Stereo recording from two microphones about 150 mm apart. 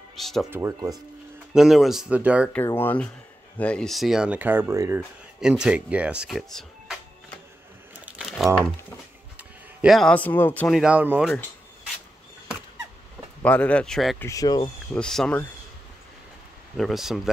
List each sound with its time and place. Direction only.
0.1 s speech: centre (ahead or behind)
0.5 s speech: 20° right (ahead or behind)
1.5 s speech: centre (ahead or behind)
2.5 s speech: 15° left (ahead or behind); by 5.0 s 20° right (ahead or behind)
5.4 s speech: 5° right (ahead or behind)
8.2 s crumpling: centre (ahead or behind)
9.4 s a sound: 10° right (ahead or behind)
9.9 s speech: 5° left (ahead or behind)
10.8 s speech: 10° right (ahead or behind)
13.4 s speech: 10° left (ahead or behind)
14.2 s speech: 25° left (ahead or behind)
14.9 s speech: 5° left (ahead or behind)
16.7 s speech: centre (ahead or behind)